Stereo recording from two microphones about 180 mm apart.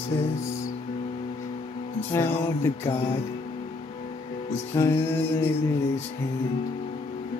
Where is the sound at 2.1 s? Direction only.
15° left (ahead or behind).